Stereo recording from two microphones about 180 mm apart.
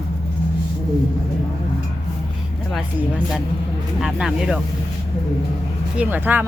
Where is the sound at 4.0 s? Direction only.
Centre (ahead or behind).